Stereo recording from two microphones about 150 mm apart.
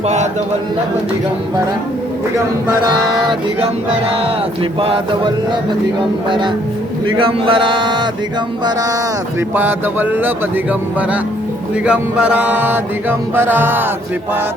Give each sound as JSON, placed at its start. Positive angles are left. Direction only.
{"t": 3.6, "sound": "mantra", "side_deg": -40}
{"t": 9.6, "sound": "music", "side_deg": -15}